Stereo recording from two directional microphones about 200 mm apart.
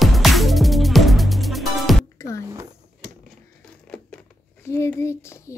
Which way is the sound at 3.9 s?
5° left (ahead or behind).